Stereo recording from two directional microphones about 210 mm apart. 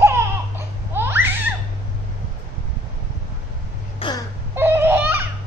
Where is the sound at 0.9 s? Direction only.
10° right (ahead or behind).